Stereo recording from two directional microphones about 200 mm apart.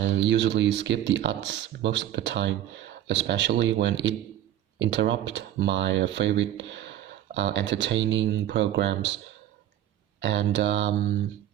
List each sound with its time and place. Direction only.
0.0 s speech: 60° right (ahead or behind)
10.2 s speech: 65° right (ahead or behind)